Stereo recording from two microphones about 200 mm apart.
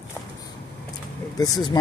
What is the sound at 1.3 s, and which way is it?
Speech, 20° left (ahead or behind).